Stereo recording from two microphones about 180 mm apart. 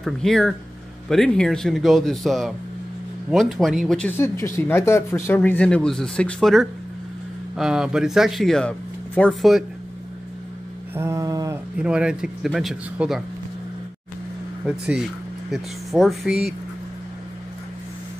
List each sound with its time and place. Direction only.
0.0 s speech: centre (ahead or behind)
4.6 s speech: 15° left (ahead or behind)
11.0 s a sound: 15° right (ahead or behind)
11.7 s speech: 5° right (ahead or behind)
15.5 s speech: centre (ahead or behind)